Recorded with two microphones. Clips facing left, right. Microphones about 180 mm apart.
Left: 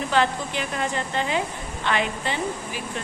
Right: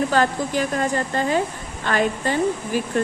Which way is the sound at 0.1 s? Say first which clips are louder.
Right 3 dB; 40° right (ahead or behind).